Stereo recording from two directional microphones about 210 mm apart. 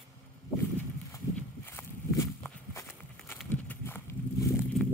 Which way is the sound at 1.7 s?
10° left (ahead or behind).